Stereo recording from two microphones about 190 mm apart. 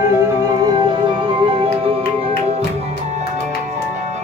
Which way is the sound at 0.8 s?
25° right (ahead or behind).